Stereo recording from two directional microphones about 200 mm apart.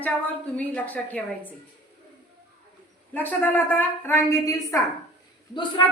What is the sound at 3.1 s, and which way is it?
A woman's voice, 10° left (ahead or behind).